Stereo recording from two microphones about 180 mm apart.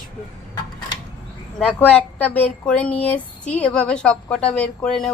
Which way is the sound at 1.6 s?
5° left (ahead or behind).